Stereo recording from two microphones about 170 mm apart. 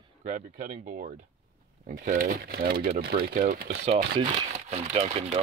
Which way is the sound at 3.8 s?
35° right (ahead or behind).